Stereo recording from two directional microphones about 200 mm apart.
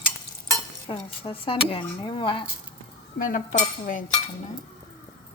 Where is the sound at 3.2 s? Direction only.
40° left (ahead or behind).